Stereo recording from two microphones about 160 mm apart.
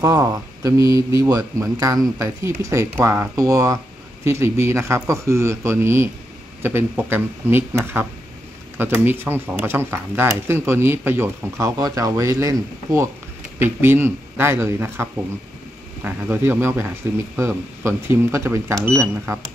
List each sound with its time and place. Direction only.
0.0 s speech: 20° right (ahead or behind)